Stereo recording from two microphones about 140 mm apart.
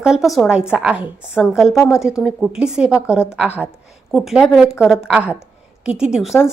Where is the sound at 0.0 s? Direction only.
5° right (ahead or behind).